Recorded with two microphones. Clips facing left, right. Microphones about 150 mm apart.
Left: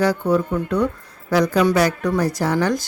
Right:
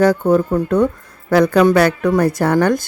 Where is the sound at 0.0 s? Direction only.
45° right (ahead or behind).